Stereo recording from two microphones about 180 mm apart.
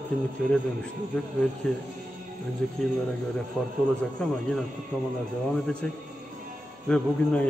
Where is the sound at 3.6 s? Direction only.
5° left (ahead or behind).